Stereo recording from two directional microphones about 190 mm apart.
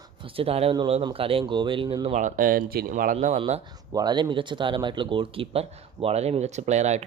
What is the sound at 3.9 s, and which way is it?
Speech, 20° right (ahead or behind).